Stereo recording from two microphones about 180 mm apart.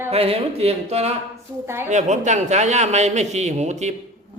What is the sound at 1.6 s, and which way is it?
Speech, 15° right (ahead or behind).